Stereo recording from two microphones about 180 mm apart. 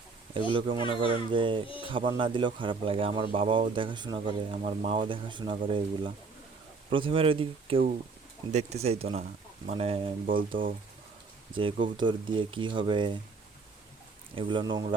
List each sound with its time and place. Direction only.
0.3 s a man's voice: 30° right (ahead or behind)
4.6 s speech: 45° right (ahead or behind)
4.9 s a man's voice: 30° right (ahead or behind)
10.6 s speech: 50° right (ahead or behind)
11.5 s a man's voice: 30° right (ahead or behind)
14.3 s a man's voice: 25° right (ahead or behind)